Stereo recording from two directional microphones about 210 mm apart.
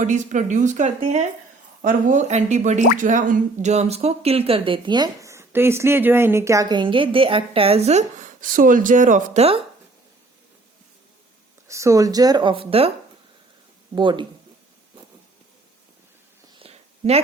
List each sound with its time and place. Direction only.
0.0 s speech: 35° right (ahead or behind)
11.7 s speech: 15° right (ahead or behind)
13.9 s speech: 20° right (ahead or behind)
16.6 s a sound: 30° right (ahead or behind)